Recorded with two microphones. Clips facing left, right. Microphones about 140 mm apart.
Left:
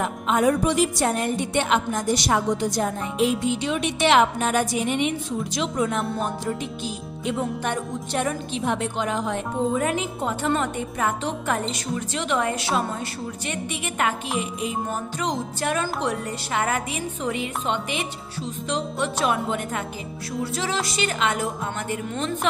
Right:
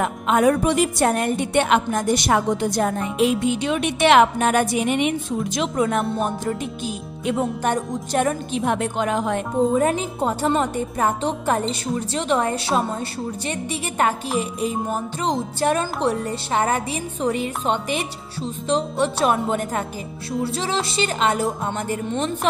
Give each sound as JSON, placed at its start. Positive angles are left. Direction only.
{"t": 0.0, "sound": "music", "side_deg": -65}
{"t": 5.6, "sound": "music", "side_deg": -55}
{"t": 7.2, "sound": "speech", "side_deg": -50}
{"t": 9.8, "sound": "a woman's voice", "side_deg": -35}
{"t": 15.6, "sound": "a woman's voice", "side_deg": -35}
{"t": 19.2, "sound": "speech", "side_deg": -40}
{"t": 20.9, "sound": "a woman's voice", "side_deg": -30}